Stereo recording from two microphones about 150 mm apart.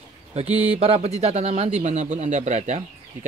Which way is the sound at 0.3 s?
45° right (ahead or behind).